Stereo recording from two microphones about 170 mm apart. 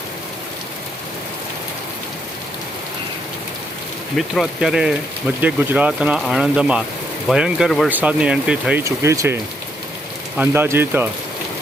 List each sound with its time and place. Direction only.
4.2 s speech: centre (ahead or behind)
8.8 s speech: 15° right (ahead or behind)